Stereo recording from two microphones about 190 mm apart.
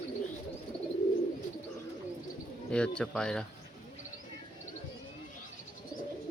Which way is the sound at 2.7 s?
5° left (ahead or behind).